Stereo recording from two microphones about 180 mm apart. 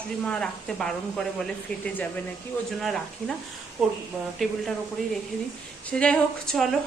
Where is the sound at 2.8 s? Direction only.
Centre (ahead or behind).